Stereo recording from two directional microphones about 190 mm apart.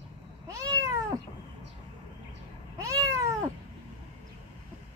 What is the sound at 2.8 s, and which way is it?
Cat, 15° right (ahead or behind).